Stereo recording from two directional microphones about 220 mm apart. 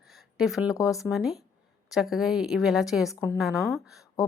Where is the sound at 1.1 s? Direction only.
Centre (ahead or behind).